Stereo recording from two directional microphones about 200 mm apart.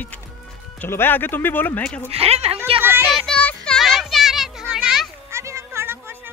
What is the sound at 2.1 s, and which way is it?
Speech, 30° right (ahead or behind).